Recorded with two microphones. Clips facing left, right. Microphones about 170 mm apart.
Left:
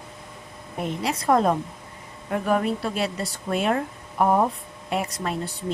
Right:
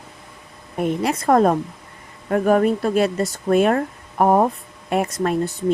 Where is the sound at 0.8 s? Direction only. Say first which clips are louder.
Right 5 dB; 50° right (ahead or behind).